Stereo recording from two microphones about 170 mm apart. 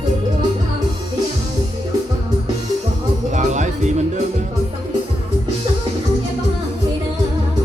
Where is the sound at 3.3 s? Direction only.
45° right (ahead or behind).